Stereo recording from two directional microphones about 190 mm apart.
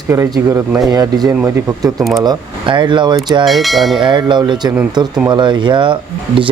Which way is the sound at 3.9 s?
25° right (ahead or behind).